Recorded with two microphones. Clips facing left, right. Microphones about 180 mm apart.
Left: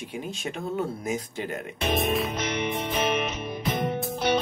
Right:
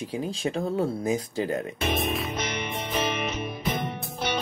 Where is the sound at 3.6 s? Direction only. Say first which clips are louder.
Left 6 dB; centre (ahead or behind).